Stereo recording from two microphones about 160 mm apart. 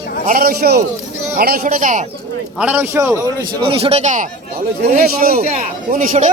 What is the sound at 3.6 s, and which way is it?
Speech, 35° right (ahead or behind).